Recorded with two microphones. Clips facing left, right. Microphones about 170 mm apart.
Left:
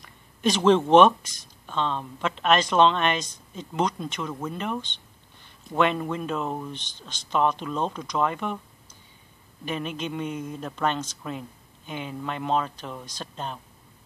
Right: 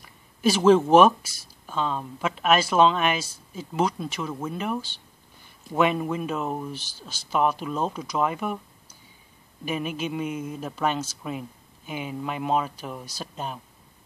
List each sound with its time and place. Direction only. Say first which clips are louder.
0.0 s speech: right 2 dB; 5° right (ahead or behind)
9.7 s speech: right 2 dB; 10° right (ahead or behind)